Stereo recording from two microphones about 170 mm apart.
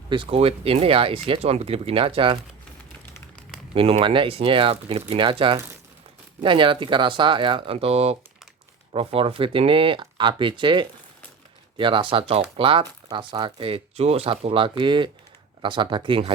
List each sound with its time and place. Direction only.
0.1 s speech: 30° right (ahead or behind)
3.8 s speech: 35° right (ahead or behind)